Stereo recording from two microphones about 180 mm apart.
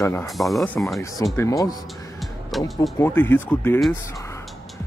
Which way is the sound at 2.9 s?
10° left (ahead or behind).